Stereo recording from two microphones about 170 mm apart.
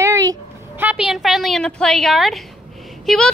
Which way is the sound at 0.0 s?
20° right (ahead or behind).